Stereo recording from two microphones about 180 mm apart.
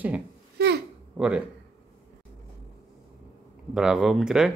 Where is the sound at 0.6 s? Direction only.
60° right (ahead or behind).